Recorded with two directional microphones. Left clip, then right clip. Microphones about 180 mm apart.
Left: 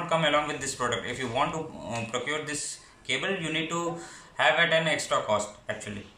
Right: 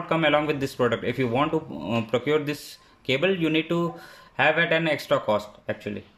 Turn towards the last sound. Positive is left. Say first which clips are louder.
# right 3 dB
turn(degrees=-55)  # may be behind; listen again after turning